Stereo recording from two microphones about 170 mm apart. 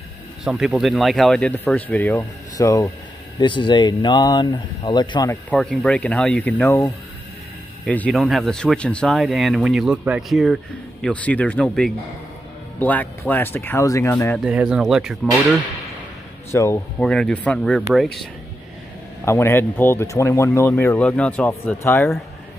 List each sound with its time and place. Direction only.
0.4 s speech: centre (ahead or behind); by 5.4 s 25° left (ahead or behind)
5.5 s speech: 5° left (ahead or behind)
7.8 s speech: 10° left (ahead or behind)
14.4 s speech: 5° right (ahead or behind)
16.5 s speech: 15° left (ahead or behind)
17.0 s speech: 5° left (ahead or behind)
19.2 s speech: 15° left (ahead or behind)